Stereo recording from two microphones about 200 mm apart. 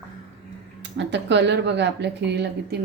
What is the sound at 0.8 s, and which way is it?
Speech, 60° right (ahead or behind).